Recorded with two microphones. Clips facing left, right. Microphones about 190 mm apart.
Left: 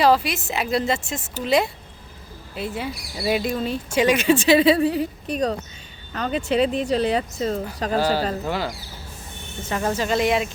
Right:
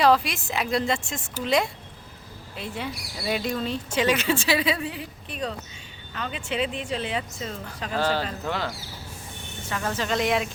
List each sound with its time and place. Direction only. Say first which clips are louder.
0.0 s a woman's voice: left 2 dB; 5° left (ahead or behind); by 7.9 s 40° left (ahead or behind)
8.4 s speech: left 3 dB; 5° left (ahead or behind)
9.6 s speech: left 5 dB; 20° left (ahead or behind); by 10.5 s centre (ahead or behind)